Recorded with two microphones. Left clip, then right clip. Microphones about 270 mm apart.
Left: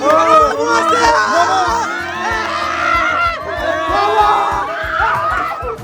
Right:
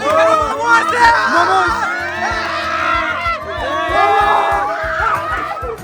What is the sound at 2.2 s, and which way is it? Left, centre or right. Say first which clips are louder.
Music: left 2 dB; left.